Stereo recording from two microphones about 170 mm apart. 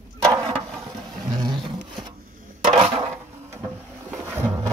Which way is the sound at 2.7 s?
30° right (ahead or behind).